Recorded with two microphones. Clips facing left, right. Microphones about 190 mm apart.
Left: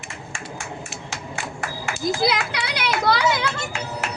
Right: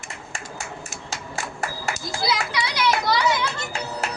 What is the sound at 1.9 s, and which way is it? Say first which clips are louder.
Children playing: right 2 dB; 35° right (ahead or behind).